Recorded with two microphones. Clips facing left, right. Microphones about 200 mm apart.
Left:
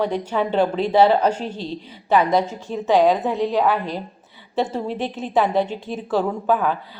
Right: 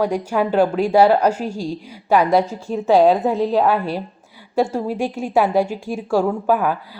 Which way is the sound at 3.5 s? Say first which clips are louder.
Right 3 dB; 10° right (ahead or behind).